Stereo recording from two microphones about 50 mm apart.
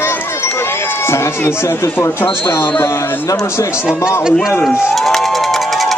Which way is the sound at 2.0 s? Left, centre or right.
Left.